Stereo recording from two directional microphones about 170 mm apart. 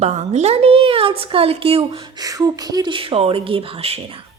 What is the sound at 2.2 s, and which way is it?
A woman's voice, 20° right (ahead or behind).